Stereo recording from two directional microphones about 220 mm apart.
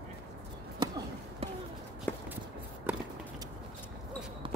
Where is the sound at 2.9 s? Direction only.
5° right (ahead or behind).